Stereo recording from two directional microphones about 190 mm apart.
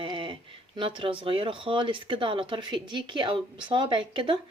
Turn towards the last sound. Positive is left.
turn(degrees=-25)  # may be behind; listen again after turning